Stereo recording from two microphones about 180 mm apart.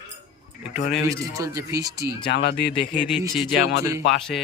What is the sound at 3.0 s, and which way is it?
Mantra, 5° right (ahead or behind).